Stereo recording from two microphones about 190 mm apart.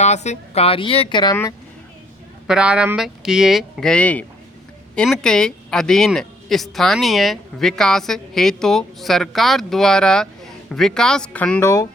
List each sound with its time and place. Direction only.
0.0 s speech: 35° left (ahead or behind); by 1.5 s 20° left (ahead or behind)
2.5 s speech: 5° right (ahead or behind)